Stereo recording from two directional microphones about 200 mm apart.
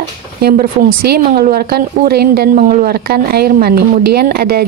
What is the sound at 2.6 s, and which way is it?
A woman's voice, 40° right (ahead or behind).